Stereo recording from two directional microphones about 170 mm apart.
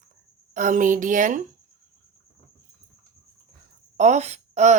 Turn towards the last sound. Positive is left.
turn(degrees=-45)  # may be behind; listen again after turning